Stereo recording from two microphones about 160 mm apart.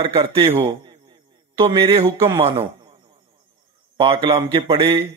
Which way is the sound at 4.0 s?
35° right (ahead or behind).